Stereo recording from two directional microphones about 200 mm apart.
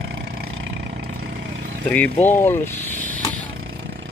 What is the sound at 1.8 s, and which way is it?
Speech, 5° left (ahead or behind).